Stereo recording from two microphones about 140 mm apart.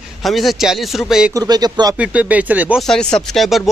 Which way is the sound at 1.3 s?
25° right (ahead or behind).